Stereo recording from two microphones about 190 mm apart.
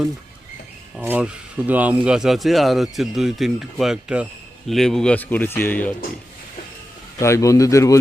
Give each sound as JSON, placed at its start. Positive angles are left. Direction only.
{"t": 0.9, "sound": "a man's voice", "side_deg": -5}
{"t": 7.2, "sound": "a man's voice", "side_deg": 15}